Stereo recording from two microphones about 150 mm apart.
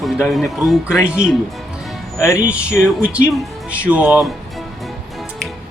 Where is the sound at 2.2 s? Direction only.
20° left (ahead or behind).